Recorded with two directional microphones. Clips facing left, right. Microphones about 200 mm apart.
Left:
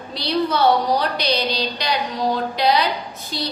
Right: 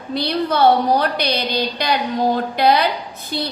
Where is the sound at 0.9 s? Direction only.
55° right (ahead or behind).